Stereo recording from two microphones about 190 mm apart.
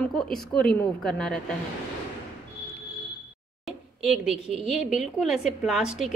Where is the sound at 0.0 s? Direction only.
Centre (ahead or behind).